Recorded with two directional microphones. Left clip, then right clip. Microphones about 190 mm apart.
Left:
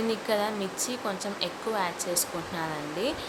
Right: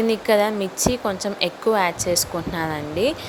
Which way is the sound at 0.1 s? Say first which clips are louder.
Right 10 dB; 40° right (ahead or behind).